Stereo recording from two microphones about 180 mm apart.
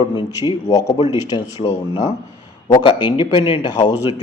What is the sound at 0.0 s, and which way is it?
Speech, 30° left (ahead or behind).